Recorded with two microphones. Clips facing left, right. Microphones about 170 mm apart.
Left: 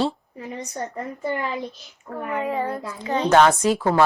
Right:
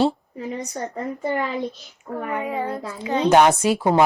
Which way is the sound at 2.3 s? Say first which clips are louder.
Left 2 dB; 10° right (ahead or behind).